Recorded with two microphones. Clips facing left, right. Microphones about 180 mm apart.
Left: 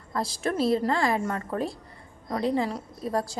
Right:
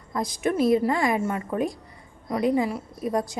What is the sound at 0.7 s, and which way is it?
A woman's voice, 15° right (ahead or behind).